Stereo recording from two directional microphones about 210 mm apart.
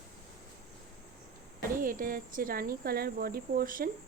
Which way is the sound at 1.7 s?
40° right (ahead or behind).